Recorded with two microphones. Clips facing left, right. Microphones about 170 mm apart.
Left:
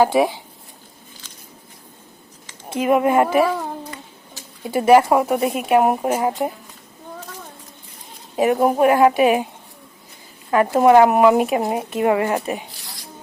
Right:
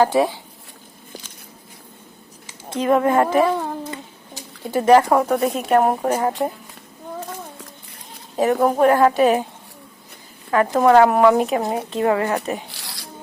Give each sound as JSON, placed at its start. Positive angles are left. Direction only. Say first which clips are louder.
{"t": 0.0, "sound": "speech", "louder": "left 1 dB", "side_deg": 15}
{"t": 2.6, "sound": "speech", "louder": "even", "side_deg": 10}
{"t": 4.7, "sound": "speech", "louder": "left 1 dB", "side_deg": 10}
{"t": 8.4, "sound": "speech", "louder": "even", "side_deg": 10}
{"t": 10.5, "sound": "speech", "louder": "left 1 dB", "side_deg": 15}
{"t": 12.7, "sound": "zipper", "louder": "right 2 dB", "side_deg": -75}